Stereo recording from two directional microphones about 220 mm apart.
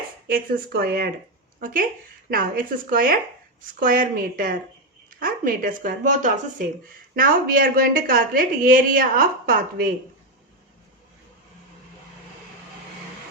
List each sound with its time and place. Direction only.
0.3 s a woman's voice: 40° right (ahead or behind)